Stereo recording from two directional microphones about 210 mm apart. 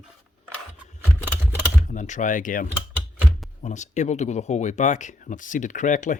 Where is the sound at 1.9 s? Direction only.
35° left (ahead or behind).